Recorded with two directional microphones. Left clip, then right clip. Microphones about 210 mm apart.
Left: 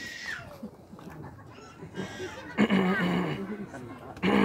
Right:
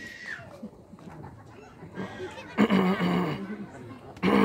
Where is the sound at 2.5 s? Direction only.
25° right (ahead or behind).